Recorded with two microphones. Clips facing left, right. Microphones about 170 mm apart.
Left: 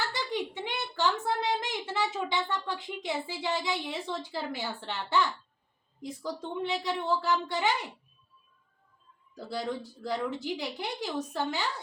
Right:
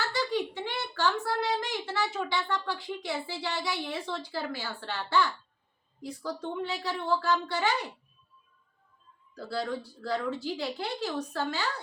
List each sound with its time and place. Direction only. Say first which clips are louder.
0.1 s a child's voice: right 3 dB; 20° left (ahead or behind)
9.3 s a woman's voice: right 1 dB; 20° left (ahead or behind)